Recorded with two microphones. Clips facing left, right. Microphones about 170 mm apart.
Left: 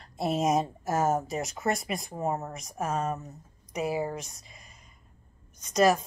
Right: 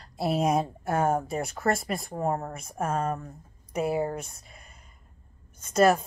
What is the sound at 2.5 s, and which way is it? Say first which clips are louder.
Speech: right 2 dB; 55° right (ahead or behind).